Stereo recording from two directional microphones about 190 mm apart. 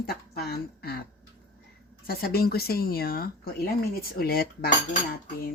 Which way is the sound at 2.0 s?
55° left (ahead or behind).